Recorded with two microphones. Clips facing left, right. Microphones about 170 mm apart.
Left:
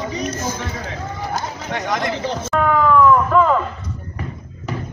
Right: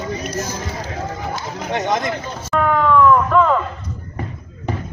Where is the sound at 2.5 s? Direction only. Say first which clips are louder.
Even; centre (ahead or behind).